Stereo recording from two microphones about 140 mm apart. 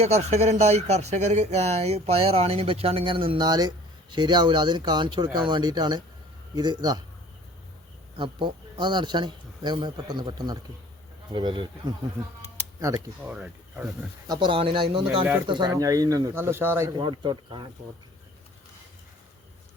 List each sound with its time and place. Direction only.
0.0 s speech: 50° right (ahead or behind); by 7.0 s 30° right (ahead or behind)
8.1 s speech: 35° right (ahead or behind)
12.9 s speech: 20° right (ahead or behind)
13.2 s speech: 10° right (ahead or behind)
14.3 s speech: 35° right (ahead or behind); by 16.9 s 15° right (ahead or behind)
17.0 s speech: 35° right (ahead or behind)